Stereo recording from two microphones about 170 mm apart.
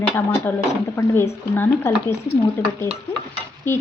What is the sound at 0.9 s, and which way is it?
A woman's voice, 15° left (ahead or behind).